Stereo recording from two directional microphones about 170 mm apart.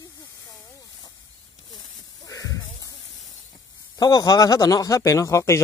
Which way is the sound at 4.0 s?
20° left (ahead or behind).